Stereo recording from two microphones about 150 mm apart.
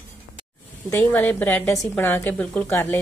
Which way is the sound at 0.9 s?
10° left (ahead or behind).